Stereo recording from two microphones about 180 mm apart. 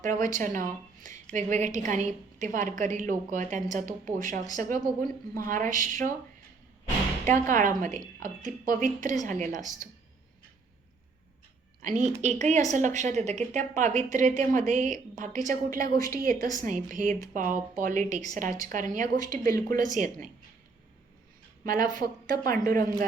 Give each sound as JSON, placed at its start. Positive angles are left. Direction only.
{"t": 0.0, "sound": "a woman's voice", "side_deg": -45}
{"t": 7.4, "sound": "a woman's voice", "side_deg": -45}
{"t": 11.8, "sound": "a woman's voice", "side_deg": -45}
{"t": 21.7, "sound": "a woman's voice", "side_deg": -50}